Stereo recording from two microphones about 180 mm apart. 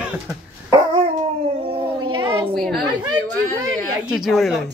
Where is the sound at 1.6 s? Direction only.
30° right (ahead or behind).